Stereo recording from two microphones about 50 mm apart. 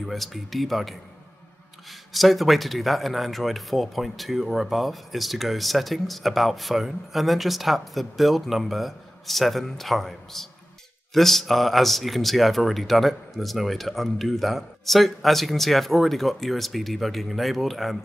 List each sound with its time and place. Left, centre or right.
0.0 s a man's voice: centre